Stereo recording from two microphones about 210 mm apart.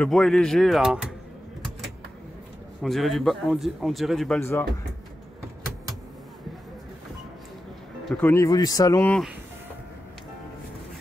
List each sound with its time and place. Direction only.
0.0 s a man's voice: centre (ahead or behind)
2.8 s a man's voice: centre (ahead or behind)
4.4 s speech: 10° left (ahead or behind)
8.0 s speech: 10° left (ahead or behind)